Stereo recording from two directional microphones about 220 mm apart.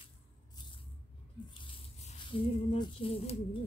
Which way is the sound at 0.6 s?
20° left (ahead or behind).